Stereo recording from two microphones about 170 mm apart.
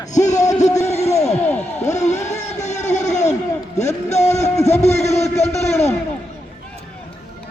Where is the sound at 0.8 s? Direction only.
40° left (ahead or behind).